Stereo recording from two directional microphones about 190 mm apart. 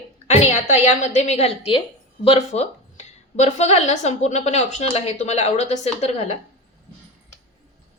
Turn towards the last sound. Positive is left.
turn(degrees=35)  # may be behind; listen again after turning